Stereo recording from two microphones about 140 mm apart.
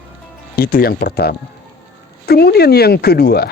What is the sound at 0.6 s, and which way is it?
Speech, 90° left.